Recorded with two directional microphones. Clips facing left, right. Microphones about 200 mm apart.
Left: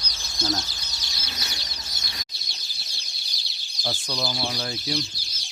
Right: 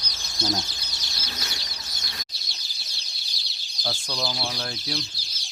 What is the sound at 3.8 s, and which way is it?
Speech, 10° left (ahead or behind).